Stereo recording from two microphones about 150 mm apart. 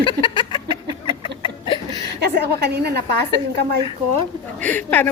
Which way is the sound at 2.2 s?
90° right.